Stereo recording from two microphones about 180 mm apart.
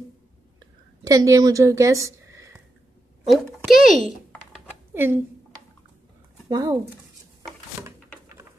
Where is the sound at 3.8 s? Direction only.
45° left (ahead or behind).